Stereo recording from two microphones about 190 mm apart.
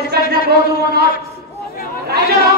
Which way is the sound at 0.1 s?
55° right (ahead or behind).